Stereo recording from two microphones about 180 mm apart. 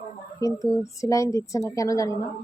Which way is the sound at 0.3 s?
15° left (ahead or behind).